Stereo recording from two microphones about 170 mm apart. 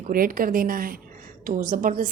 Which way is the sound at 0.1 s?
55° right (ahead or behind).